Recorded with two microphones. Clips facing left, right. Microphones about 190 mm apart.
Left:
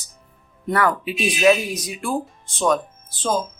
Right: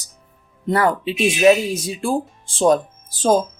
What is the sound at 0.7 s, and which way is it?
Speech, 25° right (ahead or behind).